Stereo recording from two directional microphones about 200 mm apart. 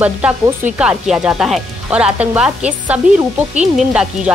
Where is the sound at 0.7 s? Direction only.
5° right (ahead or behind).